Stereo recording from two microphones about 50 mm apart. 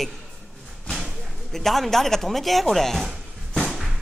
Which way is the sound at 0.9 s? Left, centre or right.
Centre.